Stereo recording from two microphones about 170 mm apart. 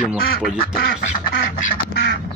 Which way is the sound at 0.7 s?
65° left (ahead or behind).